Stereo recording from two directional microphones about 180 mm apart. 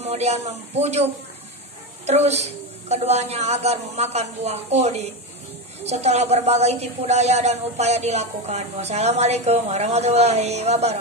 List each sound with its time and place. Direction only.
0.0 s a woman's voice: 35° right (ahead or behind)